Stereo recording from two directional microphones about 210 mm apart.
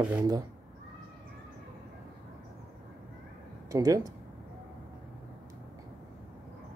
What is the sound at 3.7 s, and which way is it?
Speech, 15° right (ahead or behind).